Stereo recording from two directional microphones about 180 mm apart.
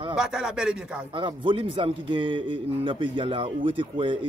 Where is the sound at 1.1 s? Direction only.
30° right (ahead or behind).